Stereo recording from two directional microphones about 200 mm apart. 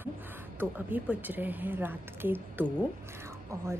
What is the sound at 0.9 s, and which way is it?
A woman's voice, 10° right (ahead or behind).